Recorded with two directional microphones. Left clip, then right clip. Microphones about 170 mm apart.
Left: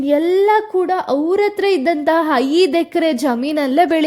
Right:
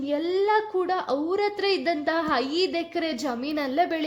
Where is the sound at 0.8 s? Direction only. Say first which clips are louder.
Left 9 dB; 40° left (ahead or behind).